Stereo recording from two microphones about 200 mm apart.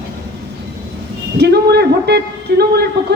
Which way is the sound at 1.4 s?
55° right (ahead or behind).